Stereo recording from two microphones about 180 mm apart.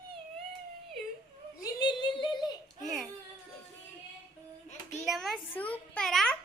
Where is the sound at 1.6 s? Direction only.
25° left (ahead or behind).